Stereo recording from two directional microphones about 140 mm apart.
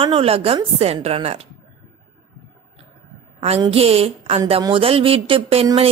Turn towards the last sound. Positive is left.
turn(degrees=-40)  # may be behind; listen again after turning